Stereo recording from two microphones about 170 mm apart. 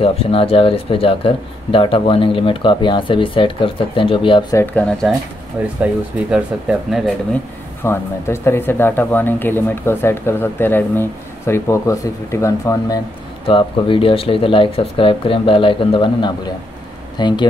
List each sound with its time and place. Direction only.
0.0 s speech: 35° left (ahead or behind)
4.6 s speech: 10° left (ahead or behind)
6.3 s speech: 5° right (ahead or behind)
7.8 s speech: 15° left (ahead or behind)
13.5 s speech: 30° left (ahead or behind)